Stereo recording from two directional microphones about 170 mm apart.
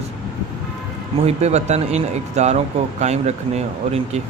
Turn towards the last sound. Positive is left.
turn(degrees=-40)  # may be behind; listen again after turning